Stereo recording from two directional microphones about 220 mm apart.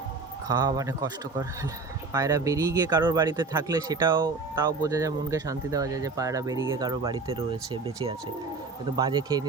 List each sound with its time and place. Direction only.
0.4 s a man's voice: 20° right (ahead or behind)